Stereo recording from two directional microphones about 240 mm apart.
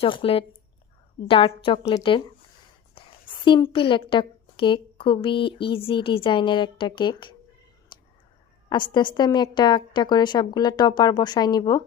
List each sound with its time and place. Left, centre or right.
0.0 s a woman's voice: left
7.9 s a sound: centre
8.7 s a woman's voice: centre